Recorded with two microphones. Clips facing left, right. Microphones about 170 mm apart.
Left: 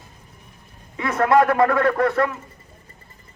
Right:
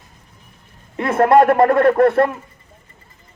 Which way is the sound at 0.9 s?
55° right (ahead or behind).